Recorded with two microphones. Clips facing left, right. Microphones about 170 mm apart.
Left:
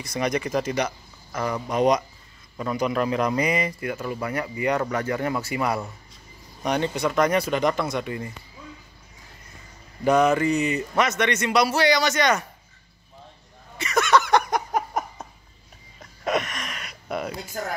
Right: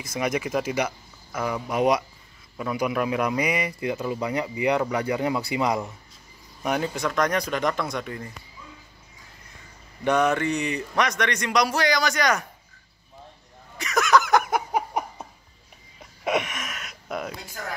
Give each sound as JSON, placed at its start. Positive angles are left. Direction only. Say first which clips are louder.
{"t": 0.0, "sound": "speech", "louder": "left 1 dB", "side_deg": -5}
{"t": 3.8, "sound": "speech", "louder": "right 2 dB", "side_deg": -15}
{"t": 6.6, "sound": "speech", "louder": "left 2 dB", "side_deg": -5}
{"t": 10.0, "sound": "speech", "louder": "left 3 dB", "side_deg": 5}
{"t": 13.7, "sound": "a sound", "louder": "even", "side_deg": 0}